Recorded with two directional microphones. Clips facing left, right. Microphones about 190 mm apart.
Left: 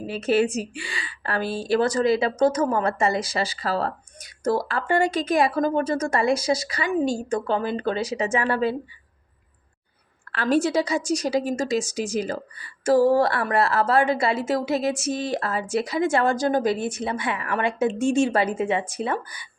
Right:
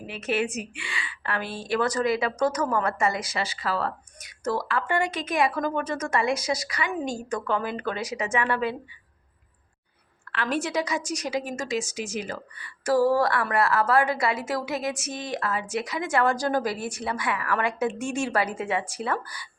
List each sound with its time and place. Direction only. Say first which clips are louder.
0.0 s a woman's voice: left 6 dB; 30° left (ahead or behind)
10.3 s a woman's voice: left 6 dB; 35° left (ahead or behind)